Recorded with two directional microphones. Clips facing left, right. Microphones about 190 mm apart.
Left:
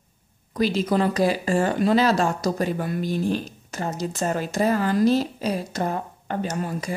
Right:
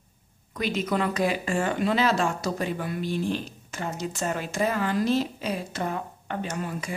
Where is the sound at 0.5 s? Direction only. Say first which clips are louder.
Left 5 dB; 35° left (ahead or behind).